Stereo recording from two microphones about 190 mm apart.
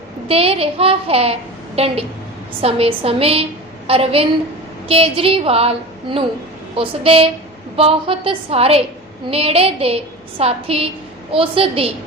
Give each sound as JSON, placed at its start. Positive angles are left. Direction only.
{"t": 0.3, "sound": "a child's voice", "side_deg": -30}